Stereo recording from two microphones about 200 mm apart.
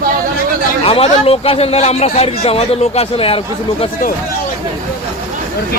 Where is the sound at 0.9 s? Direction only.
30° left (ahead or behind).